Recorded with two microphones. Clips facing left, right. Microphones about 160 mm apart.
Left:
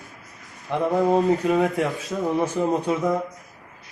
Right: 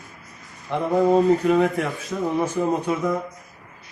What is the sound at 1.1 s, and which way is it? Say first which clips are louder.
Speech: right 2 dB; 10° left (ahead or behind).